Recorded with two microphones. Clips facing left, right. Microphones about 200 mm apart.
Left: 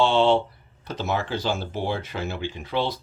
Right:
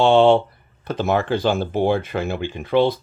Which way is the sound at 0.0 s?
55° right (ahead or behind).